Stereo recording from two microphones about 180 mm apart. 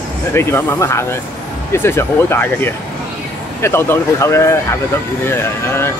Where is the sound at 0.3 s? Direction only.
15° left (ahead or behind).